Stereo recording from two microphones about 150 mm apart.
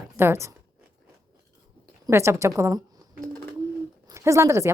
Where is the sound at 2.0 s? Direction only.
20° right (ahead or behind).